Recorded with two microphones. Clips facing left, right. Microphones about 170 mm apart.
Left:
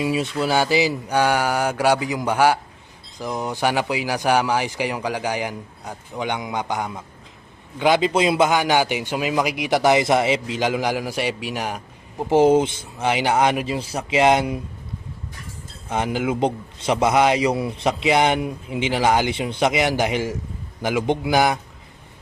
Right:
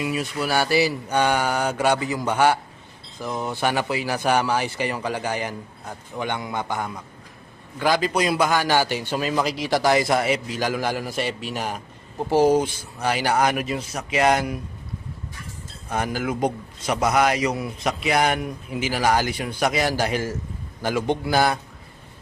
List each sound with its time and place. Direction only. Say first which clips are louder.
0.0 s a man's voice: left 4 dB; 25° left (ahead or behind)
15.9 s a man's voice: left 3 dB; 20° left (ahead or behind)